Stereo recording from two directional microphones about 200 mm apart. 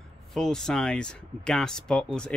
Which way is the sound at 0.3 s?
Centre (ahead or behind).